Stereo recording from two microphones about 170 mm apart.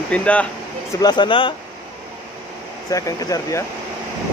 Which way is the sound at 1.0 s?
25° left (ahead or behind).